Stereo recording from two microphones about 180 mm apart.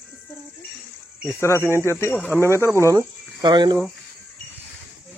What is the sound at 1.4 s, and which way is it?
Speech, 15° left (ahead or behind).